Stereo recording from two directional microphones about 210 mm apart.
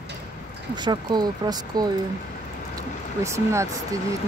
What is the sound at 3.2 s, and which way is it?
Speech, 15° right (ahead or behind).